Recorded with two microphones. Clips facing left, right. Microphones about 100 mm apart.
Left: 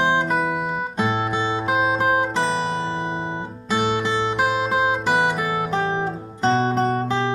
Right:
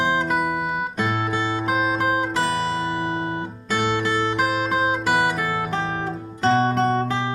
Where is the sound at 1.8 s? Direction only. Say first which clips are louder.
Left 2 dB; 30° left (ahead or behind).